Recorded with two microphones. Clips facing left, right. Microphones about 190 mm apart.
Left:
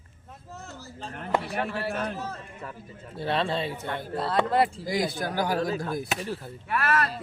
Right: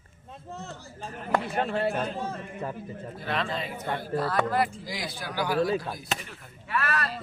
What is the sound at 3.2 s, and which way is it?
Speech, 30° left (ahead or behind).